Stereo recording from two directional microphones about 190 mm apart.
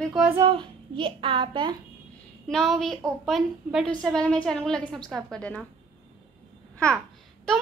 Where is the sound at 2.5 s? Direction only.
Centre (ahead or behind).